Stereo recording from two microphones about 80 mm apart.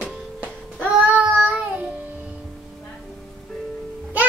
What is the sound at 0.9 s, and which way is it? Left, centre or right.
Child singing, centre.